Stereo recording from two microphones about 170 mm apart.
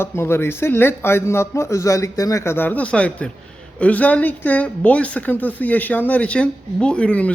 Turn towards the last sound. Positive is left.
turn(degrees=5)  # may be behind; listen again after turning